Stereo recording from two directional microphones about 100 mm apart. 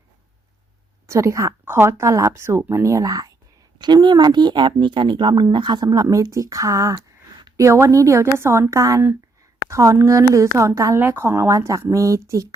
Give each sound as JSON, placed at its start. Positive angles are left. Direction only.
{"t": 1.0, "sound": "speech", "side_deg": -30}